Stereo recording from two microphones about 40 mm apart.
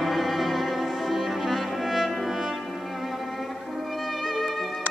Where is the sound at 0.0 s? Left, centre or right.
Centre.